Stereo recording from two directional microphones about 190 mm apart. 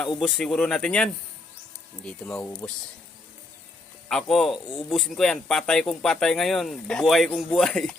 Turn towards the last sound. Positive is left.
turn(degrees=5)  # may be behind; listen again after turning